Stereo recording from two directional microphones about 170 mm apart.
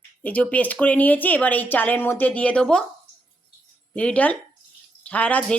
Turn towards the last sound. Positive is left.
turn(degrees=10)  # may be behind; listen again after turning